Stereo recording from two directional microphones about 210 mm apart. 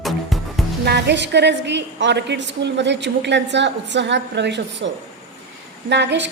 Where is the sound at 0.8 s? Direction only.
55° right (ahead or behind).